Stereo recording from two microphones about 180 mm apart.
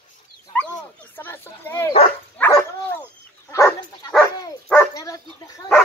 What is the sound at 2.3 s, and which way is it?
Dog, 10° left (ahead or behind).